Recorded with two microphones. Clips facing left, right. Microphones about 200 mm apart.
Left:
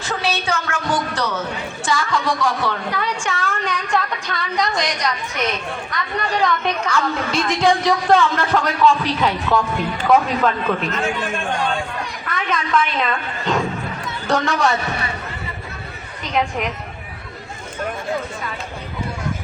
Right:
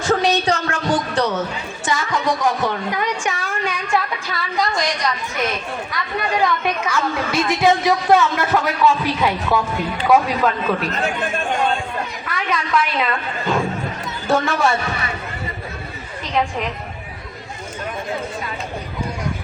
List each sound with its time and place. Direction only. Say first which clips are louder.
0.1 s a sound: right 5 dB; 40° right (ahead or behind)
1.8 s a woman's voice: even; 20° right (ahead or behind)
12.2 s a woman's voice: left 2 dB; centre (ahead or behind)